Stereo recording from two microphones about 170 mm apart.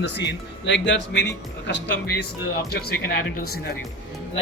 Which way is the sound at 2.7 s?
70° left (ahead or behind).